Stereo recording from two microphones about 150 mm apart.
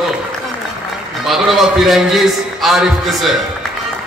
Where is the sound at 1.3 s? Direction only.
Centre (ahead or behind).